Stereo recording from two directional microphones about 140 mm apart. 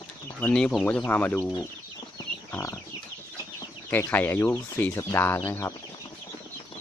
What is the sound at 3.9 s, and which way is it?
Speech, 15° left (ahead or behind).